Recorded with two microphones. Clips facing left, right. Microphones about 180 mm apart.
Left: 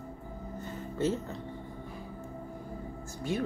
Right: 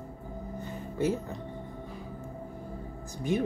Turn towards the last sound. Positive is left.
turn(degrees=-20)  # may be behind; listen again after turning